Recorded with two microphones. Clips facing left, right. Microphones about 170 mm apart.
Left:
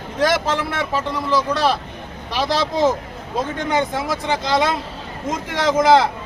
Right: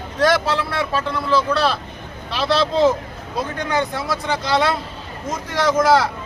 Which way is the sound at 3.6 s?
20° left (ahead or behind).